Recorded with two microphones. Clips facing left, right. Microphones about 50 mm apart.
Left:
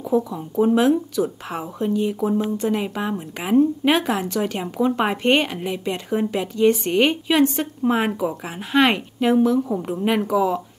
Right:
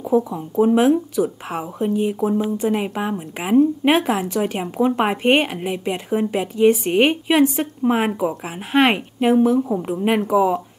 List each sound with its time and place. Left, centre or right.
0.0 s speech: right
0.4 s a woman's voice: centre